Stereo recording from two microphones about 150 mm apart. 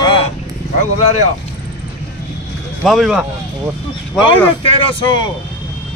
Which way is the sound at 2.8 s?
5° right (ahead or behind).